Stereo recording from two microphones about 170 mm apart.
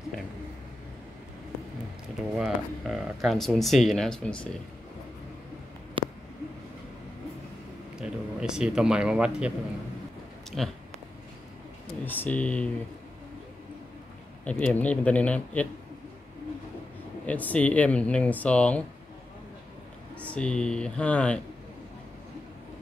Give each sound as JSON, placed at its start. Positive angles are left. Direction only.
{"t": 2.3, "sound": "speech", "side_deg": -5}
{"t": 6.0, "sound": "a sound", "side_deg": -30}
{"t": 8.0, "sound": "speech", "side_deg": -5}
{"t": 10.5, "sound": "speech", "side_deg": 0}
{"t": 12.0, "sound": "speech", "side_deg": 10}
{"t": 14.4, "sound": "speech", "side_deg": 5}
{"t": 17.3, "sound": "speech", "side_deg": 10}
{"t": 20.2, "sound": "speech", "side_deg": 5}